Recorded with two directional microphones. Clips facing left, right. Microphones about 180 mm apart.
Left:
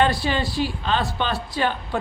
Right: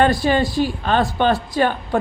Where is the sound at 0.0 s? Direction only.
50° right (ahead or behind).